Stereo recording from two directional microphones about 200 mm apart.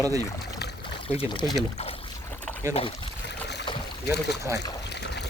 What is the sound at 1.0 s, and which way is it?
Speech, 30° left (ahead or behind).